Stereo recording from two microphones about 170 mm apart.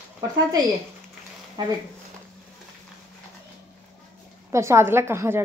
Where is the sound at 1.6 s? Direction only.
25° right (ahead or behind).